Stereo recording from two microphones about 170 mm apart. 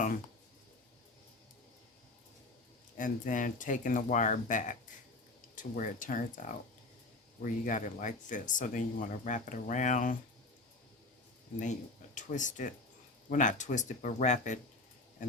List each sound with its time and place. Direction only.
3.0 s speech: 50° left (ahead or behind)
7.4 s speech: 50° left (ahead or behind)
12.1 s speech: 50° left (ahead or behind)